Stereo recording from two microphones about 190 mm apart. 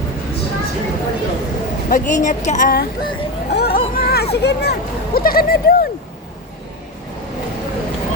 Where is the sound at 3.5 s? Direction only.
55° left (ahead or behind).